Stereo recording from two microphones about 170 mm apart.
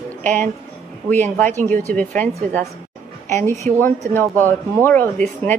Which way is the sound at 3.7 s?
50° right (ahead or behind).